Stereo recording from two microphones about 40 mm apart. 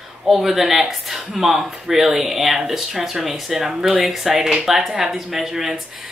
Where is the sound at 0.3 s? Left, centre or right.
Centre.